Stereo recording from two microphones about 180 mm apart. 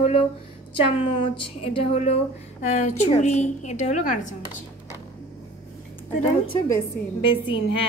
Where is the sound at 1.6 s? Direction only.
30° left (ahead or behind).